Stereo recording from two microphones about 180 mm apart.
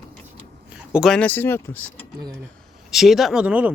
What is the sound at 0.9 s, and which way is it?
Speech, centre (ahead or behind).